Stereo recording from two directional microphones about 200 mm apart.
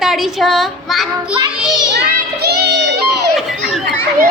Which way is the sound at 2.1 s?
50° right (ahead or behind).